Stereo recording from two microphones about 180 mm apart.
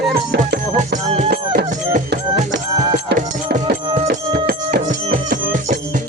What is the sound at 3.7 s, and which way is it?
Music, 55° right (ahead or behind).